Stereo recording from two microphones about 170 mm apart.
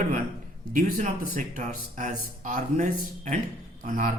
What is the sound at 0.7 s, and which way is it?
A man's voice, 50° right (ahead or behind).